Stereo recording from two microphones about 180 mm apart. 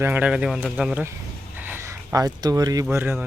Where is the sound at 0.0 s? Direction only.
10° right (ahead or behind).